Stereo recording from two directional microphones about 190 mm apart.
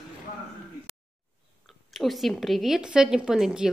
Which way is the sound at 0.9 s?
15° left (ahead or behind).